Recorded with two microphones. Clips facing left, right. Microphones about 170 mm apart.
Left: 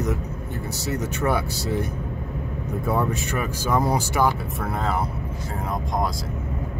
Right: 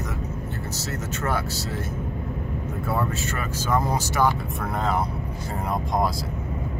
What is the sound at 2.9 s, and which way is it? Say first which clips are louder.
Speech: left 2 dB; 15° left (ahead or behind).